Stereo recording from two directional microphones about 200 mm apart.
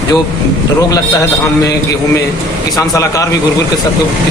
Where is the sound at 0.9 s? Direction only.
15° left (ahead or behind).